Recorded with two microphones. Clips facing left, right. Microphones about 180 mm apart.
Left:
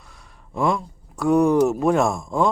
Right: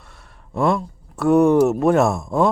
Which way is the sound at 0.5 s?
Centre (ahead or behind).